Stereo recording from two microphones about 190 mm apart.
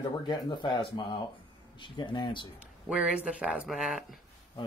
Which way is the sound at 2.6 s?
5° right (ahead or behind).